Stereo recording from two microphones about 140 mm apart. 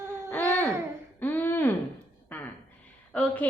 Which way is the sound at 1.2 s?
15° left (ahead or behind).